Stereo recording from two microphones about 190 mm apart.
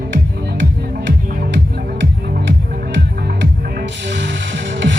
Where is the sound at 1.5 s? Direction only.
60° right (ahead or behind).